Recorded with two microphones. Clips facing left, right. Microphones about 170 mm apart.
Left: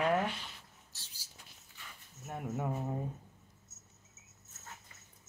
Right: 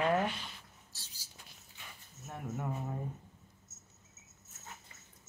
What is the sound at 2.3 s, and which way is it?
Speech, 15° left (ahead or behind).